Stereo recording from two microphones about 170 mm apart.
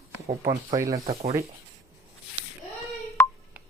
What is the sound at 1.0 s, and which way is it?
Speech, 35° right (ahead or behind).